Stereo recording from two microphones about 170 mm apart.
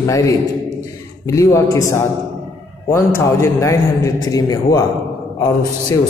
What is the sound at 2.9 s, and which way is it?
A man's voice, 15° left (ahead or behind).